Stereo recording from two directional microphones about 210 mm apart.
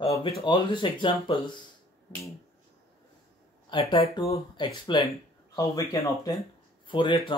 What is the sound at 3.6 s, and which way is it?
A man's voice, 20° left (ahead or behind).